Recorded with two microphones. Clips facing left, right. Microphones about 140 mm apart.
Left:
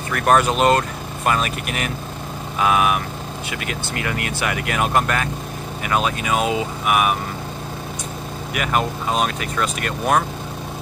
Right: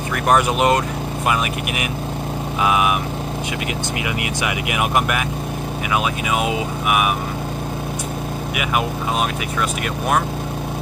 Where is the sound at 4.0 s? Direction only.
15° right (ahead or behind).